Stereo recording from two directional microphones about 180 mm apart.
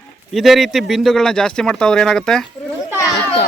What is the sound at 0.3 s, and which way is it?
Speech, centre (ahead or behind).